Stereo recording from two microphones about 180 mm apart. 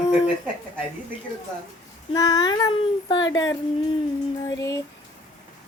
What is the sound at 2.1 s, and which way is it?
Speech, 20° left (ahead or behind).